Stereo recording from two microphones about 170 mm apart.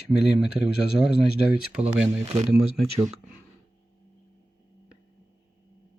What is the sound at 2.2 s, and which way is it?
Speech, 40° right (ahead or behind).